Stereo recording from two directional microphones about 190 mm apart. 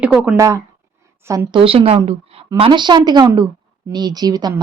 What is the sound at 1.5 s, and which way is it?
A woman's voice, 30° right (ahead or behind).